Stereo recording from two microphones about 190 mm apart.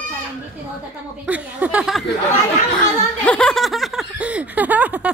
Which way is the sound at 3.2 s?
5° left (ahead or behind).